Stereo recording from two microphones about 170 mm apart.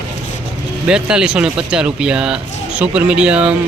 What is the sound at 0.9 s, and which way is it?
Speech, 5° right (ahead or behind).